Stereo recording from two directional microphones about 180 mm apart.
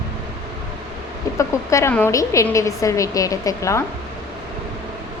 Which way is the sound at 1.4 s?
15° left (ahead or behind).